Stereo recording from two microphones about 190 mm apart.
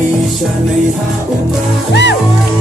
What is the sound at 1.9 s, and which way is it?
Music, 65° left (ahead or behind).